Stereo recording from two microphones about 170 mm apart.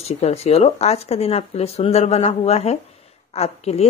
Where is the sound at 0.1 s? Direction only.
40° left (ahead or behind).